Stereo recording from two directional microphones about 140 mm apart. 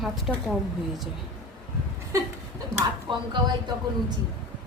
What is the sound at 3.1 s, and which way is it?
Speech, 35° right (ahead or behind).